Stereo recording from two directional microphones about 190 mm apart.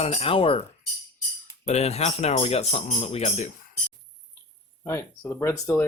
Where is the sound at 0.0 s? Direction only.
30° left (ahead or behind).